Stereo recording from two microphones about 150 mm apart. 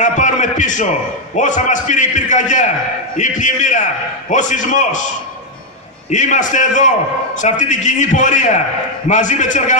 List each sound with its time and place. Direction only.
0.0 s a sound: 55° left (ahead or behind)
1.3 s a man's voice: 55° left (ahead or behind)
6.0 s a man's voice: 55° left (ahead or behind)